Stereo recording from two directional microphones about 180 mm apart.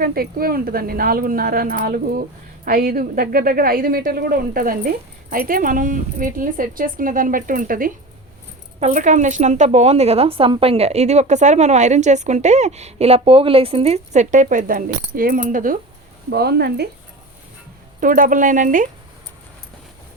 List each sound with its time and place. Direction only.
0.0 s a woman's voice: 55° right (ahead or behind)
16.3 s a woman's voice: 65° right (ahead or behind)
18.0 s a woman's voice: 50° right (ahead or behind)